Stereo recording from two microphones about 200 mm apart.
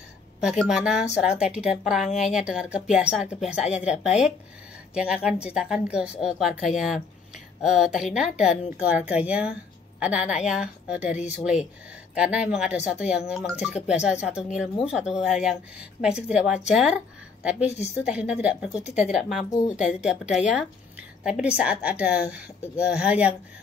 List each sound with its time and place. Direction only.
0.4 s a woman's voice: 5° right (ahead or behind)
12.2 s a woman's voice: 5° right (ahead or behind)
12.7 s speech: 35° left (ahead or behind)
13.1 s a woman's voice: 5° right (ahead or behind)
19.5 s speech: 35° left (ahead or behind)
20.0 s a woman's voice: 5° right (ahead or behind)